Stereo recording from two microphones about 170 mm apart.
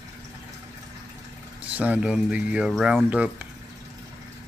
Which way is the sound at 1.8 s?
5° right (ahead or behind).